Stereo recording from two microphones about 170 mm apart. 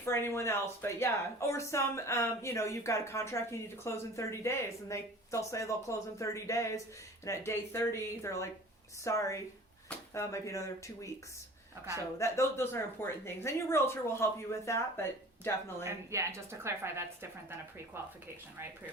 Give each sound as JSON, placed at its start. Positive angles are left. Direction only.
{"t": 0.0, "sound": "a woman's voice", "side_deg": 15}
{"t": 12.2, "sound": "speech", "side_deg": 15}
{"t": 15.8, "sound": "a woman's voice", "side_deg": -15}